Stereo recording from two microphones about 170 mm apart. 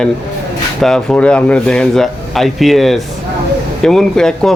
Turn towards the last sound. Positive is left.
turn(degrees=5)  # may be behind; listen again after turning